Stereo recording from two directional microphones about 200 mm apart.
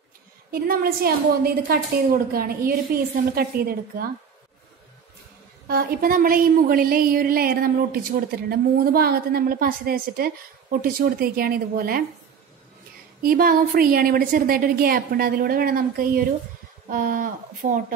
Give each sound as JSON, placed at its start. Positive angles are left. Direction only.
{"t": 0.5, "sound": "a woman's voice", "side_deg": -50}
{"t": 5.7, "sound": "a woman's voice", "side_deg": -50}
{"t": 13.2, "sound": "a woman's voice", "side_deg": -45}